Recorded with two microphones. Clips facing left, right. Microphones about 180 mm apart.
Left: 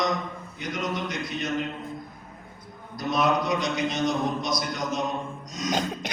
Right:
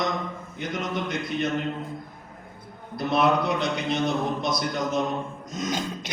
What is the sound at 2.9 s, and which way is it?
A man's voice, 60° right (ahead or behind).